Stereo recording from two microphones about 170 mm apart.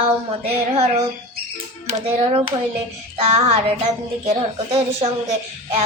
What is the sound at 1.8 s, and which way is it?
Child singing, 30° right (ahead or behind).